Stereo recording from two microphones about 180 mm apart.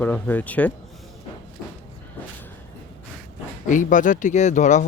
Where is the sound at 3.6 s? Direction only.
45° left (ahead or behind).